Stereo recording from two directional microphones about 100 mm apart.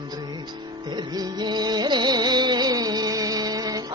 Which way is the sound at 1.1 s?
45° right (ahead or behind).